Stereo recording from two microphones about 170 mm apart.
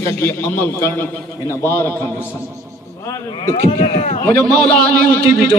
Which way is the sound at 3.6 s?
40° left (ahead or behind).